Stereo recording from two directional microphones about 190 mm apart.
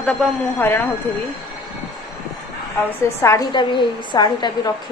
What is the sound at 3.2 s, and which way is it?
A woman's voice, 20° left (ahead or behind).